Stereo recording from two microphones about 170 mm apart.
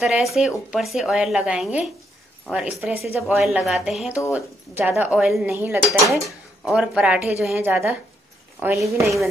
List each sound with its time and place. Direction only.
0.0 s a woman's voice: centre (ahead or behind)
8.9 s a woman's voice: 20° right (ahead or behind)